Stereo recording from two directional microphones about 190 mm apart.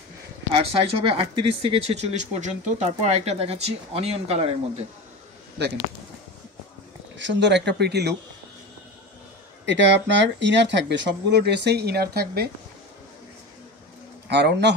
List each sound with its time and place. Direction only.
0.6 s speech: 30° right (ahead or behind)
7.2 s speech: 70° right (ahead or behind)
9.7 s speech: 70° right (ahead or behind)
14.2 s a man's voice: 65° right (ahead or behind)